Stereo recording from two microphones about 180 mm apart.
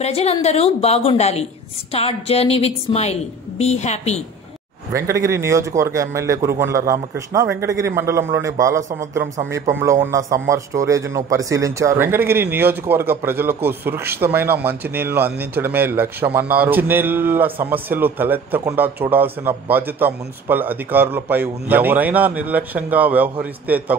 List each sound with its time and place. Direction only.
0.0 s a woman's voice: 35° left (ahead or behind)
4.9 s a man's voice: 15° right (ahead or behind)